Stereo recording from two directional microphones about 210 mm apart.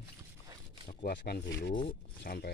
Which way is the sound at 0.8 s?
45° left (ahead or behind).